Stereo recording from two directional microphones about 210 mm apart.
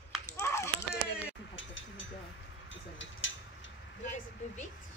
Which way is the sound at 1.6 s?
65° left (ahead or behind).